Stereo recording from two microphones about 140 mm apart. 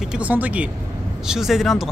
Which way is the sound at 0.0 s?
10° right (ahead or behind).